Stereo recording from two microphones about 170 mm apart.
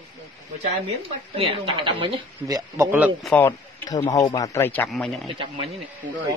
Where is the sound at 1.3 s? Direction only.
30° right (ahead or behind).